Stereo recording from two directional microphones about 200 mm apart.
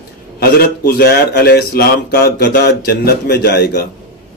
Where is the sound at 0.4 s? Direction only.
50° left (ahead or behind).